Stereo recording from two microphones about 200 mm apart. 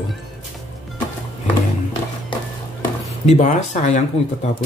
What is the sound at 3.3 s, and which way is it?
Speech, 35° left (ahead or behind).